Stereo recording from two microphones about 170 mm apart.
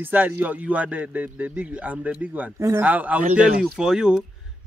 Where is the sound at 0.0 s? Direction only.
10° right (ahead or behind).